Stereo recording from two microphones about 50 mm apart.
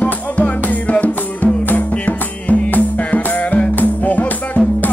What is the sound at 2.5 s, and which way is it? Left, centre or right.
Music, left.